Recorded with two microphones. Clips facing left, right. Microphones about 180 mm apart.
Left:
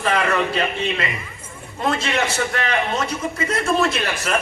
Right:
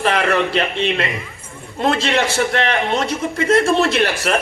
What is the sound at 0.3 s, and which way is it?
A man's voice, 70° right (ahead or behind).